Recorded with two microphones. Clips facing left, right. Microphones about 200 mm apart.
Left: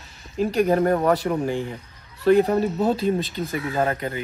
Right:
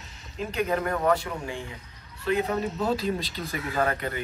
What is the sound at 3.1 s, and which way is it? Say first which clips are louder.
Speech: left 7 dB; 50° left (ahead or behind).